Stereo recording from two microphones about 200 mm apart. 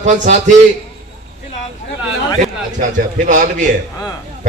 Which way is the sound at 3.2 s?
40° right (ahead or behind).